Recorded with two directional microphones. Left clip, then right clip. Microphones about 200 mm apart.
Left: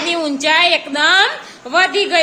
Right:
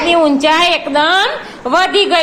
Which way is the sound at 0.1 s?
10° left (ahead or behind).